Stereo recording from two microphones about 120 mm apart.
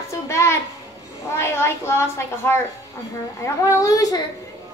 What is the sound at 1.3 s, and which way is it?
A woman's voice, 20° left (ahead or behind).